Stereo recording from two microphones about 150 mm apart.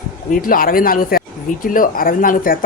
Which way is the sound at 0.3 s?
70° left (ahead or behind).